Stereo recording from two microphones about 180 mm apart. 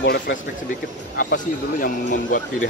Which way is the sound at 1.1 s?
50° left (ahead or behind).